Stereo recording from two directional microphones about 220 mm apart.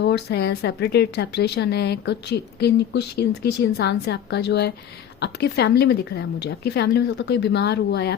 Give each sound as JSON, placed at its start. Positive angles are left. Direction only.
{"t": 0.0, "sound": "a woman's voice", "side_deg": 50}